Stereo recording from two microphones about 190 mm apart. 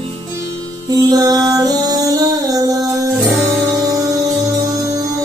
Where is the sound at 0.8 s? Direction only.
20° right (ahead or behind).